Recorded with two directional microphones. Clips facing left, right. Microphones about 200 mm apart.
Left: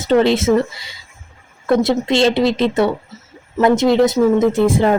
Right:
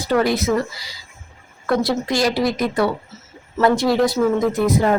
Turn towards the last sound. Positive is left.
turn(degrees=25)  # may be behind; listen again after turning